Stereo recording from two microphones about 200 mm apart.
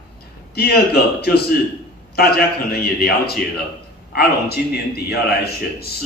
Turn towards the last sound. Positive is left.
turn(degrees=50)  # may be behind; listen again after turning